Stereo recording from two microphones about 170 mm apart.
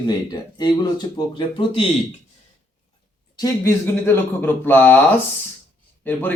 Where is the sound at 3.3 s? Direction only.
15° left (ahead or behind).